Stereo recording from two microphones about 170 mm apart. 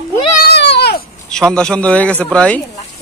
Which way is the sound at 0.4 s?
75° left (ahead or behind).